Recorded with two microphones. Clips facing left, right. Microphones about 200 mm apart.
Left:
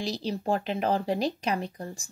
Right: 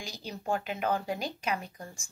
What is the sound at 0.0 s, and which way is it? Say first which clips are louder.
Speech: left 9 dB; 35° left (ahead or behind).